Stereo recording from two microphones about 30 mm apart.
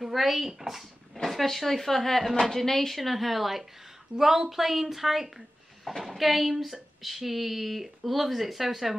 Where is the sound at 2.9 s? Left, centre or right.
Centre.